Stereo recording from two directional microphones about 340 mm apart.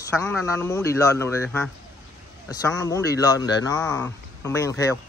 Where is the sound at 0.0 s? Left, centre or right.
Centre.